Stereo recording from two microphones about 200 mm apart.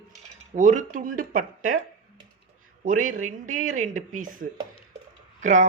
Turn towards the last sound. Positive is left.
turn(degrees=-40)  # may be behind; listen again after turning